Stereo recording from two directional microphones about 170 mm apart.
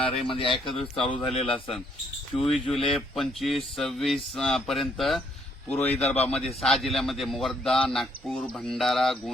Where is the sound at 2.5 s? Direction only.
Centre (ahead or behind).